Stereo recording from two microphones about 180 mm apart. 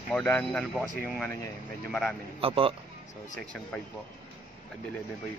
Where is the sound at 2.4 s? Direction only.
30° right (ahead or behind).